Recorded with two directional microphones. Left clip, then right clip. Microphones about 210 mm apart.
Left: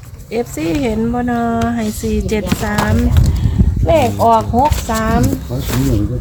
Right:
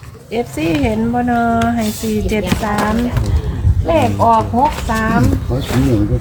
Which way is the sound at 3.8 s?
40° left (ahead or behind).